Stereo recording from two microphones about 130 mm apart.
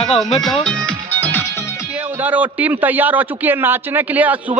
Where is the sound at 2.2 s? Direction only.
10° right (ahead or behind).